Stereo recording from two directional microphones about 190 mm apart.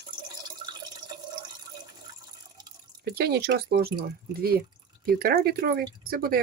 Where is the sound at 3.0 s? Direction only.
55° right (ahead or behind).